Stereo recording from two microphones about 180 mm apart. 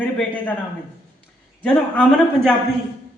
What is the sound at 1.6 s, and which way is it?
Speech, 5° left (ahead or behind).